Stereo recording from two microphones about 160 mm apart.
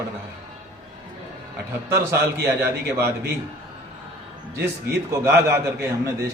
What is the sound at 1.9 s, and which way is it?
A man's voice, 15° right (ahead or behind).